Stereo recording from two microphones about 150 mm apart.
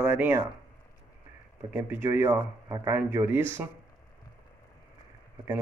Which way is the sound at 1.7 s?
15° right (ahead or behind).